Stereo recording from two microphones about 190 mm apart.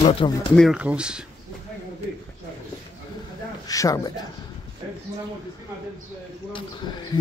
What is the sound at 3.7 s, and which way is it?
Speech, 20° left (ahead or behind).